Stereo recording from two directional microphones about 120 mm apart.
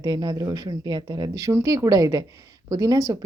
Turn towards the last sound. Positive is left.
turn(degrees=-30)  # may be behind; listen again after turning